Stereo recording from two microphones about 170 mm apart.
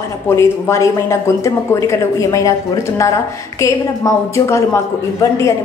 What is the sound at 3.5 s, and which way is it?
A woman's voice, 15° left (ahead or behind).